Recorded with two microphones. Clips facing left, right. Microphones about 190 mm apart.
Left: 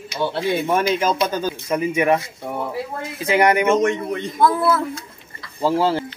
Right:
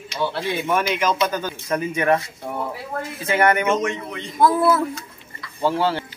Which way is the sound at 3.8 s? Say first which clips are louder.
Left 6 dB; 50° left (ahead or behind).